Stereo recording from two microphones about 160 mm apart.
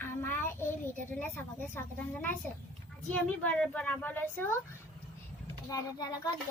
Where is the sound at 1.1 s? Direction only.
10° left (ahead or behind).